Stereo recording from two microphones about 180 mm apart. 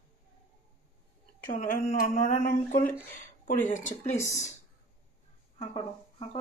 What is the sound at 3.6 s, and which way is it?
Speech, 45° left (ahead or behind).